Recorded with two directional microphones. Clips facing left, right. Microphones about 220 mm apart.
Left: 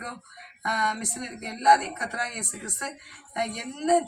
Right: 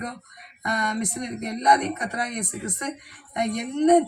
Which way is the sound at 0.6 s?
35° right (ahead or behind).